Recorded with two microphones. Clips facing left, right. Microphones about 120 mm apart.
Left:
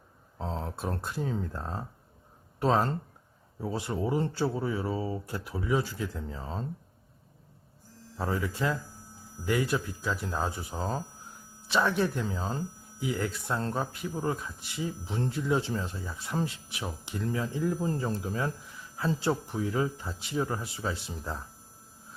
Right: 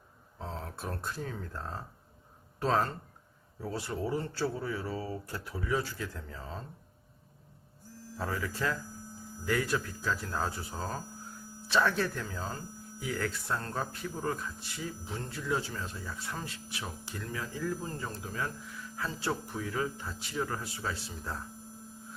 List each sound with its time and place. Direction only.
0.3 s speech: 30° left (ahead or behind)
8.2 s speech: 20° left (ahead or behind)